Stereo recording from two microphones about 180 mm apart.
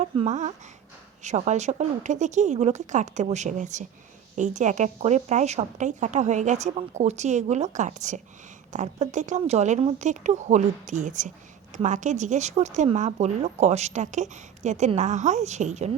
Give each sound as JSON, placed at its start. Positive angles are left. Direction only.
{"t": 0.0, "sound": "speech", "side_deg": -40}